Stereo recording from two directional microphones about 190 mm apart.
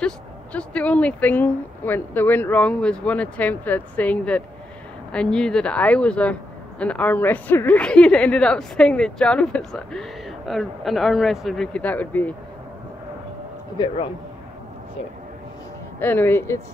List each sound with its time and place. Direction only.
0.0 s a woman's voice: 5° left (ahead or behind)
13.7 s speech: 25° left (ahead or behind)
16.0 s speech: 10° left (ahead or behind)